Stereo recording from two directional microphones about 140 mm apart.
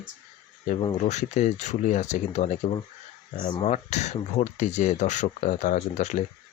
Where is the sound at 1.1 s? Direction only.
55° left (ahead or behind).